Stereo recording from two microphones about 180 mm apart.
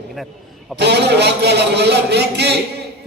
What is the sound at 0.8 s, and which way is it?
Speech, 70° right (ahead or behind).